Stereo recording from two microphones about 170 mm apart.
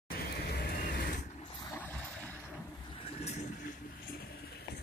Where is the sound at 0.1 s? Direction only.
65° left (ahead or behind).